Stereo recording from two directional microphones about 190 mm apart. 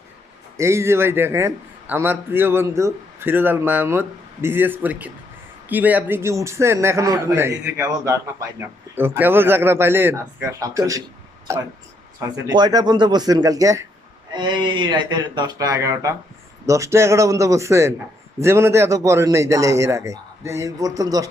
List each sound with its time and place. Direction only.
0.5 s a man's voice: 15° right (ahead or behind)